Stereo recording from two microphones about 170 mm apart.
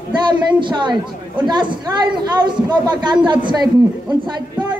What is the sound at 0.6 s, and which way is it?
Speech, 25° right (ahead or behind).